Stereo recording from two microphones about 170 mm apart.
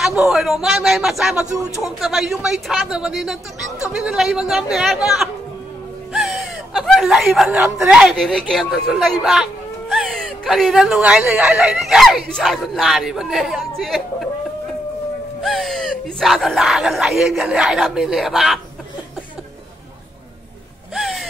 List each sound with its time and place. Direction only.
0.0 s speech: centre (ahead or behind)
6.1 s a sound: centre (ahead or behind)
7.8 s speech: 5° right (ahead or behind)
15.4 s speech: centre (ahead or behind)
20.9 s music: centre (ahead or behind)